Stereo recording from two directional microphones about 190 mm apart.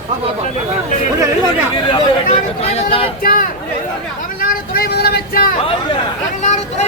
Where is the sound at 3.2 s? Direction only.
50° left (ahead or behind).